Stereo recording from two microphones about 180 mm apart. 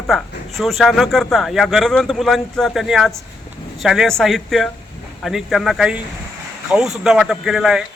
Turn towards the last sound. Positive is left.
turn(degrees=-5)  # may be behind; listen again after turning